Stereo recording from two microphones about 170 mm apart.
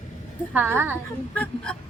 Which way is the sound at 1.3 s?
5° left (ahead or behind).